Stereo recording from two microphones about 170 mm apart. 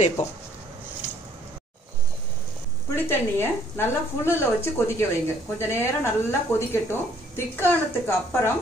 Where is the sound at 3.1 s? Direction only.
15° left (ahead or behind).